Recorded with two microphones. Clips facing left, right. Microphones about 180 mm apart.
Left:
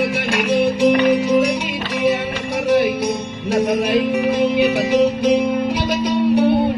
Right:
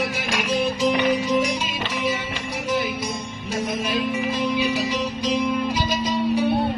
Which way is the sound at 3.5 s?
65° left (ahead or behind).